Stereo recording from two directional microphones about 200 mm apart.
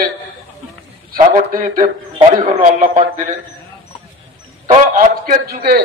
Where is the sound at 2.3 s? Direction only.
25° right (ahead or behind).